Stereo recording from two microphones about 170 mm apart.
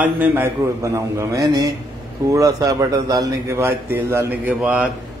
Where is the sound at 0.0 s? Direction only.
10° right (ahead or behind).